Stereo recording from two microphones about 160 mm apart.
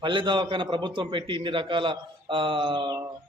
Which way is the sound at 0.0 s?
30° right (ahead or behind).